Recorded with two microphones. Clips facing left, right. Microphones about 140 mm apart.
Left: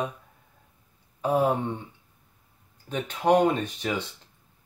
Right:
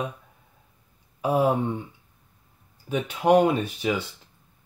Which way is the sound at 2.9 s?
10° right (ahead or behind).